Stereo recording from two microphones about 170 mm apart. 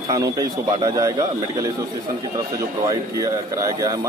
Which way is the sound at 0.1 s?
20° right (ahead or behind).